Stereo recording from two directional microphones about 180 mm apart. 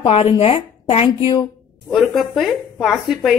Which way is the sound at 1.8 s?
Centre (ahead or behind).